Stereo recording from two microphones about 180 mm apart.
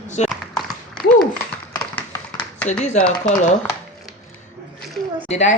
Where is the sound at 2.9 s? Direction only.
5° left (ahead or behind).